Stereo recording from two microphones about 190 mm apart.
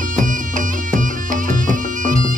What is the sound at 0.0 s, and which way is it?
Music, 45° right (ahead or behind).